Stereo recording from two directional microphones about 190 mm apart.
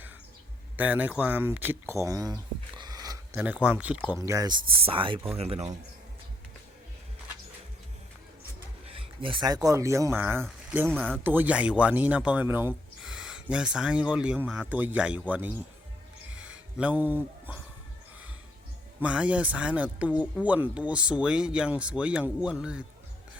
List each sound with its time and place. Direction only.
0.8 s speech: 10° right (ahead or behind)
3.4 s speech: 5° right (ahead or behind)
4.3 s speech: 15° right (ahead or behind); by 5.7 s 35° right (ahead or behind)
8.9 s speech: 25° right (ahead or behind); by 17.6 s 10° right (ahead or behind)
19.0 s speech: 5° right (ahead or behind)